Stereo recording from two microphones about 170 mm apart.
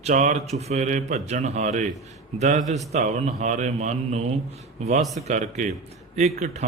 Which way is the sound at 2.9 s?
40° right (ahead or behind).